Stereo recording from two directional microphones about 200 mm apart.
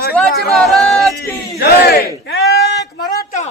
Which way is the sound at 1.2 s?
50° left (ahead or behind).